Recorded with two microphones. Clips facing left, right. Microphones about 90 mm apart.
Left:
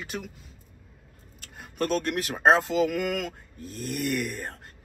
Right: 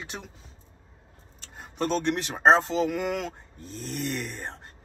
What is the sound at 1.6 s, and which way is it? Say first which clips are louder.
Speech: right 1 dB; 5° left (ahead or behind).